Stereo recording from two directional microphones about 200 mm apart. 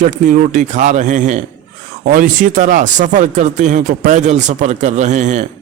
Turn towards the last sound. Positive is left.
turn(degrees=-40)  # may be behind; listen again after turning